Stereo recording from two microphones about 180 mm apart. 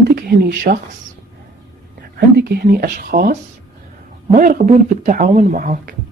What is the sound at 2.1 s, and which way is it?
Speech, 60° right (ahead or behind).